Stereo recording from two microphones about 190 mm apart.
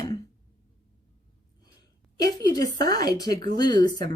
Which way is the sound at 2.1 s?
20° left (ahead or behind).